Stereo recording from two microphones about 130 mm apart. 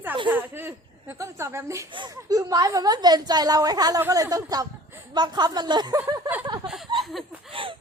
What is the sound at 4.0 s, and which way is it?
Speech, 25° right (ahead or behind).